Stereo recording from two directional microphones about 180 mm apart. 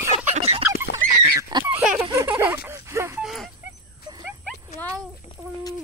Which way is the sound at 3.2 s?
Centre (ahead or behind).